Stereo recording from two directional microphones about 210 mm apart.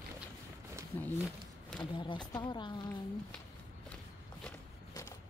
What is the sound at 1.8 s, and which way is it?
Speech, 20° left (ahead or behind).